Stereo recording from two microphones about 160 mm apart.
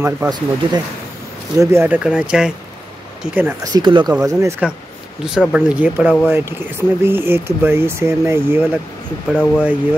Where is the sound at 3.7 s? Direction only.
30° right (ahead or behind).